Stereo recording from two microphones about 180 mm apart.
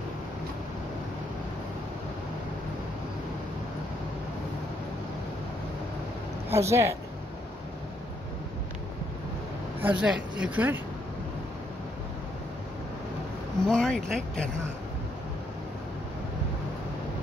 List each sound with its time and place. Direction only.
6.5 s speech: 15° right (ahead or behind)
9.8 s speech: 10° right (ahead or behind)
13.7 s speech: 5° left (ahead or behind)